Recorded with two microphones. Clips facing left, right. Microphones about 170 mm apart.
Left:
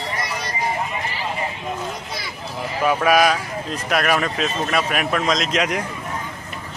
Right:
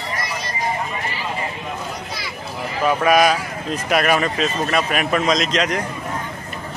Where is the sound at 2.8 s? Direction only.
5° left (ahead or behind).